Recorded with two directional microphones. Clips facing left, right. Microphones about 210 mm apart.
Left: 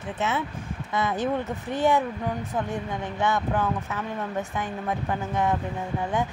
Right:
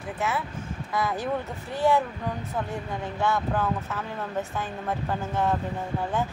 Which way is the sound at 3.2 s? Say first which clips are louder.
Left 1 dB; 20° left (ahead or behind).